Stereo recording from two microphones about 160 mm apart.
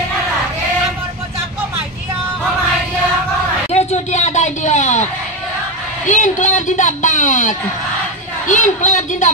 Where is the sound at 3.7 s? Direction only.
45° left (ahead or behind).